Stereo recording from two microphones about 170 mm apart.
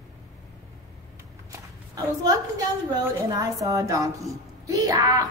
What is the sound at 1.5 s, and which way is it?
Walk, 20° right (ahead or behind).